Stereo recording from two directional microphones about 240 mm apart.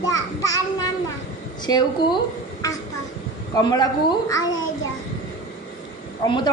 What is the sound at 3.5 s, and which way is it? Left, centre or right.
Speech, centre.